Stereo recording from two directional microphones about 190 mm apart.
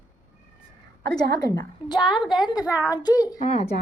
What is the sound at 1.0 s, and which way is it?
Speech, 60° right (ahead or behind).